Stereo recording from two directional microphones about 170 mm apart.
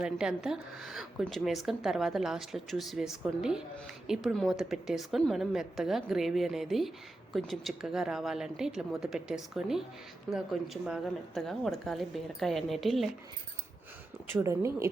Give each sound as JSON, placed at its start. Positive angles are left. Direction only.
{"t": 0.0, "sound": "speech", "side_deg": -5}
{"t": 14.4, "sound": "speech", "side_deg": -15}